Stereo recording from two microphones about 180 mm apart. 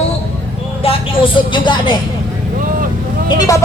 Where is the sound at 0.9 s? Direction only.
25° left (ahead or behind).